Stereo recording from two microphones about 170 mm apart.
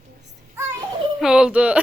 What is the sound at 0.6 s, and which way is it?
Music, 15° right (ahead or behind).